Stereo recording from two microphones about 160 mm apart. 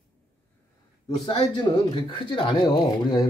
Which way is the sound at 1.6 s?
30° left (ahead or behind).